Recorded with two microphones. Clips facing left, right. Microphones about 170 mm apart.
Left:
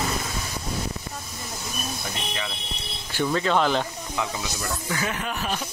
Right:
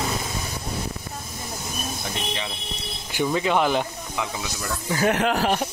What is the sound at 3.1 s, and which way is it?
Speech, 15° right (ahead or behind).